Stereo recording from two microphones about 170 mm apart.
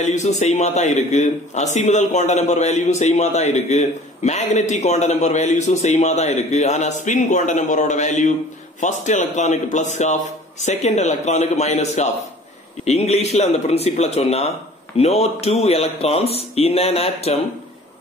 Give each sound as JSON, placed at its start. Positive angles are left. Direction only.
{"t": 0.0, "sound": "a man's voice", "side_deg": 40}